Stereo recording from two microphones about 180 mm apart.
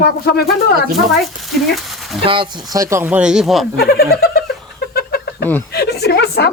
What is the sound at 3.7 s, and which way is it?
Speech, 60° left (ahead or behind).